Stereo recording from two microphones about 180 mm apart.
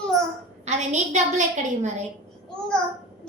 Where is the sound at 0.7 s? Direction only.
40° right (ahead or behind).